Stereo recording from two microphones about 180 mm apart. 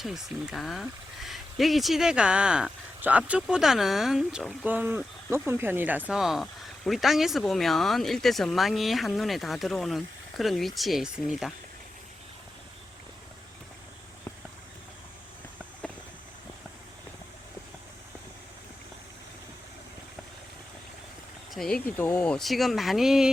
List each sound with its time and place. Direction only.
0.0 s speech: centre (ahead or behind)
21.5 s speech: 5° left (ahead or behind)